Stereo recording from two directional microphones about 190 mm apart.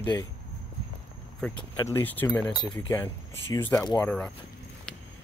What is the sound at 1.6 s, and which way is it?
Speech, 15° left (ahead or behind).